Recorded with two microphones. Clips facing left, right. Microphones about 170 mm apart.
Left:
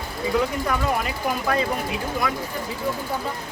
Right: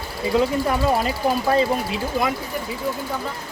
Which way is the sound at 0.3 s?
30° right (ahead or behind).